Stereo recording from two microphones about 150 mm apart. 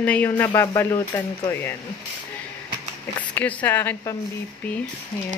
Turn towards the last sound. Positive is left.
turn(degrees=15)  # may be behind; listen again after turning